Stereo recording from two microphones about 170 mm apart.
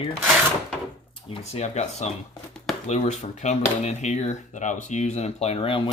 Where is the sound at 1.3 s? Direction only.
40° left (ahead or behind).